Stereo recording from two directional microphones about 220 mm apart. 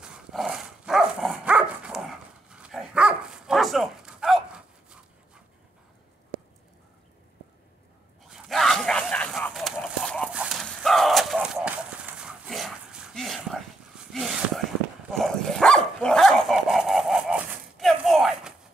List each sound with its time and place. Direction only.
0.0 s dog: centre (ahead or behind)
8.3 s a sound: centre (ahead or behind)
15.0 s dog: centre (ahead or behind)